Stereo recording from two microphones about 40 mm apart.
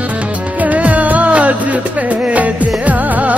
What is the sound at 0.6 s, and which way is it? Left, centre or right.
Music, right.